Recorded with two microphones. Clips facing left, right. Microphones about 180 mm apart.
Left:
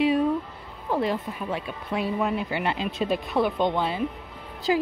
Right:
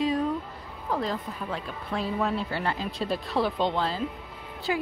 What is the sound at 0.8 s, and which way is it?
Speech, 25° left (ahead or behind).